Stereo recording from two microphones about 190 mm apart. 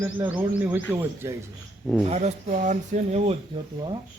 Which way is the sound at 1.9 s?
Centre (ahead or behind).